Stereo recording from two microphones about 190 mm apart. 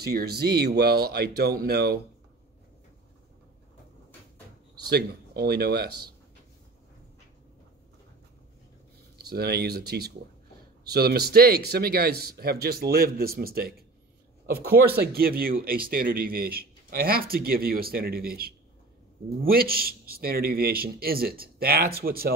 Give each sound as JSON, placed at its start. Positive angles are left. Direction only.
{"t": 0.0, "sound": "a man's voice", "side_deg": -55}
{"t": 4.8, "sound": "a man's voice", "side_deg": -55}
{"t": 9.3, "sound": "a man's voice", "side_deg": -55}